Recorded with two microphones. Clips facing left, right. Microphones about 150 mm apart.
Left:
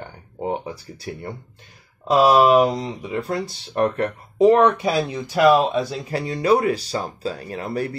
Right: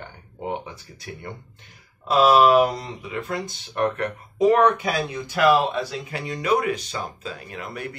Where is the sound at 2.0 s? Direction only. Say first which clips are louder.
Left 2 dB; 15° left (ahead or behind).